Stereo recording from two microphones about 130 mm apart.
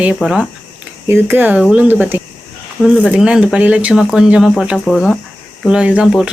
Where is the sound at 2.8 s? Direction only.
Centre (ahead or behind).